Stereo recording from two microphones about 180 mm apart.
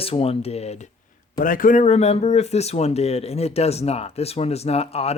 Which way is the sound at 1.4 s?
50° left (ahead or behind).